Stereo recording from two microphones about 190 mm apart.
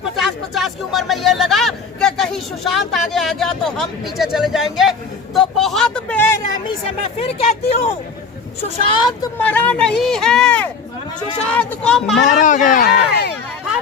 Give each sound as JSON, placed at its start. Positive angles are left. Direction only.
{"t": 0.2, "sound": "speech", "side_deg": 0}
{"t": 8.6, "sound": "a woman's voice", "side_deg": 25}
{"t": 9.4, "sound": "speech", "side_deg": 10}
{"t": 12.3, "sound": "speech", "side_deg": 40}